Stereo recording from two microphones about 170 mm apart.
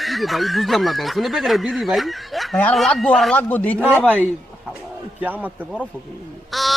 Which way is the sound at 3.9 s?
10° right (ahead or behind).